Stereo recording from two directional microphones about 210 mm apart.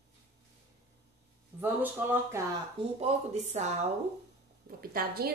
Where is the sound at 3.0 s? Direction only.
35° right (ahead or behind).